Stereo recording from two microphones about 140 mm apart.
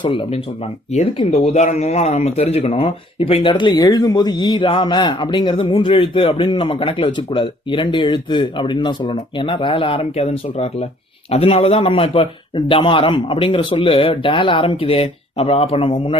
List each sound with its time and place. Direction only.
0.0 s speech: 40° left (ahead or behind)
0.9 s speech: 50° left (ahead or behind)